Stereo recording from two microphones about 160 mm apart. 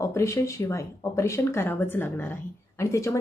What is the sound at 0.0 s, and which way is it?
Speech, 20° left (ahead or behind).